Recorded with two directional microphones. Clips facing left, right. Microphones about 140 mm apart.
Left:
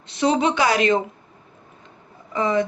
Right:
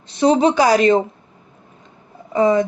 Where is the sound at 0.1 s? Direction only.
35° right (ahead or behind).